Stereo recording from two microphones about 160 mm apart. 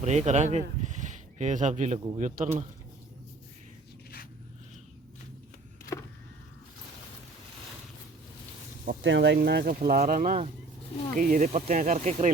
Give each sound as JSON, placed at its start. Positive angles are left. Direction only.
{"t": 0.0, "sound": "speech", "side_deg": -45}
{"t": 8.8, "sound": "speech", "side_deg": -80}